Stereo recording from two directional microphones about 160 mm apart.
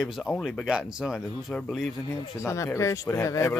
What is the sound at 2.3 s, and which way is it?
Speech, 20° left (ahead or behind).